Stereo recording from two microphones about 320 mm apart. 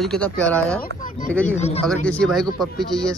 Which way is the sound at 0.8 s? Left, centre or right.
Left.